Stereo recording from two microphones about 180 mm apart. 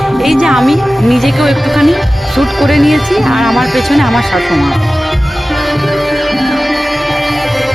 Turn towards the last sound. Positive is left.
turn(degrees=0)  # may be behind; listen again after turning